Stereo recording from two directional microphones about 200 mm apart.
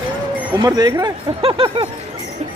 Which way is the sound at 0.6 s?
20° right (ahead or behind).